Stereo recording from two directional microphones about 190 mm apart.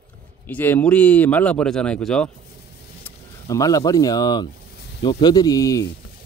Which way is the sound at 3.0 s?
15° left (ahead or behind).